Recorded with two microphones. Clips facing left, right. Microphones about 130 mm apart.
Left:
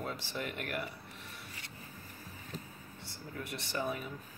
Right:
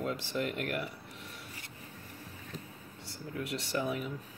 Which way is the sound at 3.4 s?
70° right (ahead or behind).